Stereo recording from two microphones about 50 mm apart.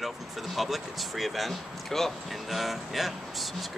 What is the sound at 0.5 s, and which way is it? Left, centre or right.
Speech, centre.